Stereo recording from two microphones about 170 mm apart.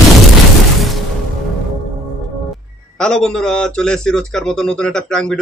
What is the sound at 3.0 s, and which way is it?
A man's voice, 5° left (ahead or behind).